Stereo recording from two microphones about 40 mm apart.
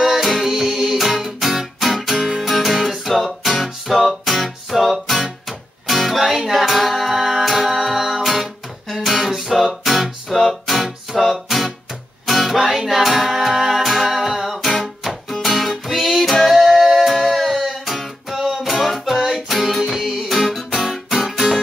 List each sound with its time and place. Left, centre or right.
0.0 s music: centre
6.3 s singing: centre
8.9 s music: centre